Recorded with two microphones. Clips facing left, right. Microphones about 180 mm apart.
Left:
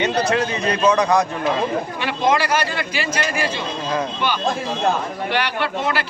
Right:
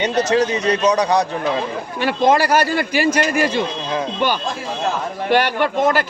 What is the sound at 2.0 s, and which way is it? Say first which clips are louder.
A man's voice: right 5 dB; 45° right (ahead or behind).